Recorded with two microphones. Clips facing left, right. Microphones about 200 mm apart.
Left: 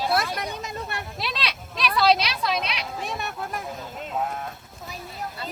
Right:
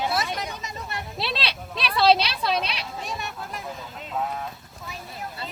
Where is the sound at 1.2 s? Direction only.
30° right (ahead or behind).